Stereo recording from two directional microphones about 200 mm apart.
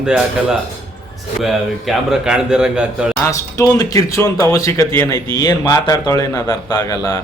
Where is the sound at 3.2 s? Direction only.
15° left (ahead or behind).